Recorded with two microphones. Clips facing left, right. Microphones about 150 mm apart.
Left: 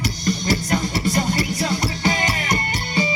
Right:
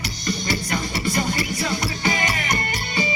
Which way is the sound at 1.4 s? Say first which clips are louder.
Left 3 dB; 35° left (ahead or behind).